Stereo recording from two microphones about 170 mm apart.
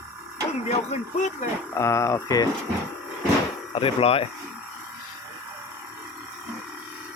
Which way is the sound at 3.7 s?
30° left (ahead or behind).